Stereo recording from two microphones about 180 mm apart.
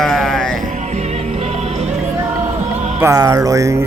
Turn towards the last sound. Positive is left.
turn(degrees=-15)  # may be behind; listen again after turning